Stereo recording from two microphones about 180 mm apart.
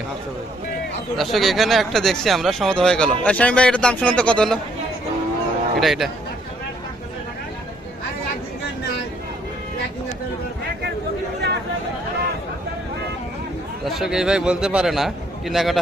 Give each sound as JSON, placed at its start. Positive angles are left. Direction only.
{"t": 1.1, "sound": "speech", "side_deg": 0}
{"t": 5.8, "sound": "speech", "side_deg": 0}
{"t": 11.3, "sound": "chatter", "side_deg": -70}
{"t": 13.8, "sound": "speech", "side_deg": 0}